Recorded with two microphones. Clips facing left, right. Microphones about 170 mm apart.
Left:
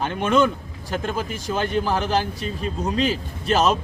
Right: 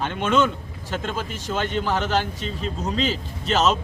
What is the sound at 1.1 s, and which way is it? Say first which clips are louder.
Speech: left 2 dB; 10° left (ahead or behind).